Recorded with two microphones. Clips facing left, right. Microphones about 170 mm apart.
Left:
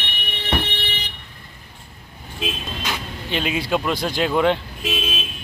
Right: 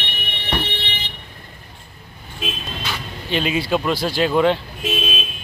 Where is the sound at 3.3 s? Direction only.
15° left (ahead or behind).